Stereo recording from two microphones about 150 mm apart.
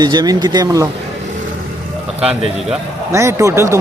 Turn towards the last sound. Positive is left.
turn(degrees=-20)  # may be behind; listen again after turning